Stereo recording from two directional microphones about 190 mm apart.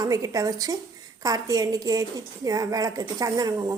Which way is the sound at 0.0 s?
15° right (ahead or behind).